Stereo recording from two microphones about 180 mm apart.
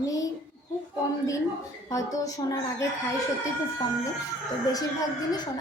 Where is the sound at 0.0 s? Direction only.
20° left (ahead or behind).